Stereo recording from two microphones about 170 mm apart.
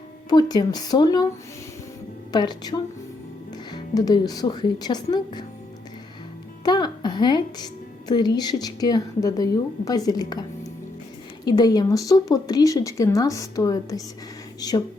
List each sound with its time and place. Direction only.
0.3 s a woman's voice: 25° left (ahead or behind)
2.3 s a woman's voice: 25° left (ahead or behind)
6.7 s a woman's voice: 25° left (ahead or behind)